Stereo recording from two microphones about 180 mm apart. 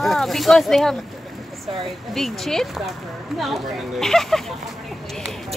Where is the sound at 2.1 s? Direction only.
Centre (ahead or behind).